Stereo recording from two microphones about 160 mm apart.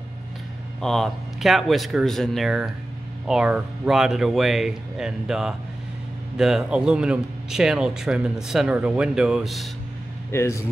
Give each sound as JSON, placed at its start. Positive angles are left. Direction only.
{"t": 0.7, "sound": "speech", "side_deg": 5}
{"t": 10.3, "sound": "speech", "side_deg": 15}